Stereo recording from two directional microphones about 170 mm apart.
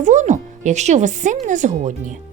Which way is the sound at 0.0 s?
45° right (ahead or behind).